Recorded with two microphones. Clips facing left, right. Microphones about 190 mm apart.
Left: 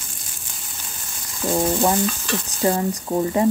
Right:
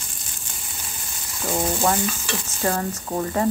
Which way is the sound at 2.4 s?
15° left (ahead or behind).